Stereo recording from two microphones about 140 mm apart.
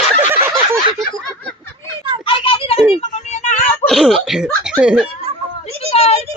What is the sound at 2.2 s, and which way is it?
Children playing, 40° left (ahead or behind).